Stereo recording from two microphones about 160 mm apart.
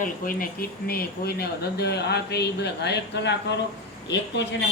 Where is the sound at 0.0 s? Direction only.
60° left (ahead or behind); by 3.3 s 90° left.